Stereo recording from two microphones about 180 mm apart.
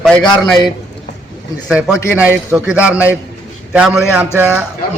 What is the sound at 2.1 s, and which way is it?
A man's voice, 10° right (ahead or behind).